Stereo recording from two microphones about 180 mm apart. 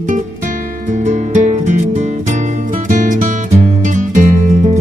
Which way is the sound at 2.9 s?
45° right (ahead or behind).